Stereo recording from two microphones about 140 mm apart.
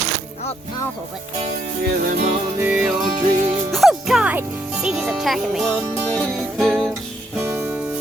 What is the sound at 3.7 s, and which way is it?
A child's voice, centre (ahead or behind).